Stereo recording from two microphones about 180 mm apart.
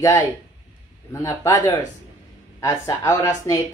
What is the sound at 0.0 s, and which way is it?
Speech, 15° left (ahead or behind).